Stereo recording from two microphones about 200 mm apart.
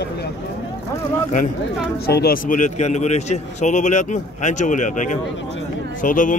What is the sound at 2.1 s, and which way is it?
Speech, 50° left (ahead or behind).